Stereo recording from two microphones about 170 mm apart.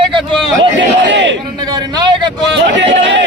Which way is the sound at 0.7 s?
90° right.